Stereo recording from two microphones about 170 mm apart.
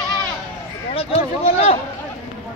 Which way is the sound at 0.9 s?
35° left (ahead or behind).